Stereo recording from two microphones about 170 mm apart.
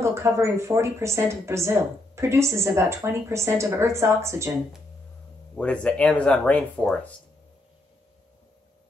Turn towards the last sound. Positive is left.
turn(degrees=5)  # may be behind; listen again after turning